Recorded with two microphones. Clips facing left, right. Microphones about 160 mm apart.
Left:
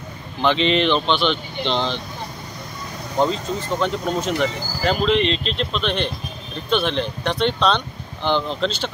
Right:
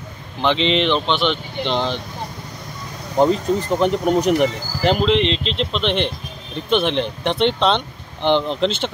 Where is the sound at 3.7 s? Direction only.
15° right (ahead or behind).